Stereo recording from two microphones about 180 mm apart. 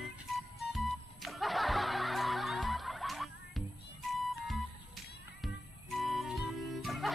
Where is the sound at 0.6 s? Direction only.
Centre (ahead or behind).